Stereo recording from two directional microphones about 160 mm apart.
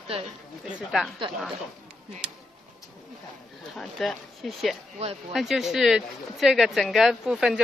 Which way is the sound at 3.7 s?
Centre (ahead or behind).